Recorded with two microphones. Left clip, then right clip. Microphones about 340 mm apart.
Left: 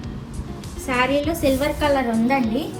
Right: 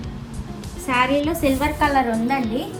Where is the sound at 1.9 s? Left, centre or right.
Centre.